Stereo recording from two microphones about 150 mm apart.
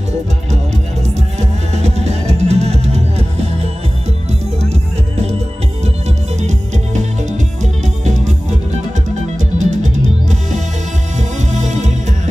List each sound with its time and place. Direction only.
1.0 s music: 50° right (ahead or behind)
6.0 s music: 50° right (ahead or behind)
11.1 s music: 50° right (ahead or behind)